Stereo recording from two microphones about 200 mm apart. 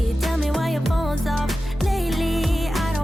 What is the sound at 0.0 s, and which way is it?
Music, centre (ahead or behind).